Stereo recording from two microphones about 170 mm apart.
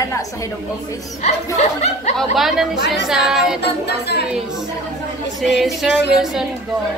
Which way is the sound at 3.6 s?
75° left (ahead or behind).